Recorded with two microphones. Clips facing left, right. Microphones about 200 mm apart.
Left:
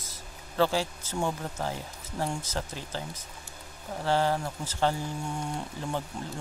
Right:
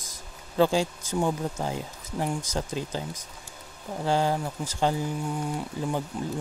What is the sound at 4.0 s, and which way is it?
Speech, 15° right (ahead or behind).